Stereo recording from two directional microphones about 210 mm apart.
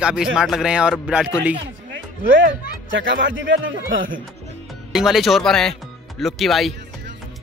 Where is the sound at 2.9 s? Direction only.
60° right (ahead or behind).